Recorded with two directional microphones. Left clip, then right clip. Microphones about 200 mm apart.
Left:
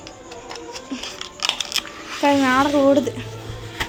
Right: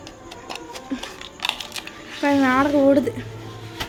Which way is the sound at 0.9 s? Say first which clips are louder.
Right 1 dB; 20° right (ahead or behind).